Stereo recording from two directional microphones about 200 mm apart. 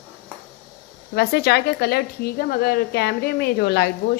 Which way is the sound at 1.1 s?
55° left (ahead or behind).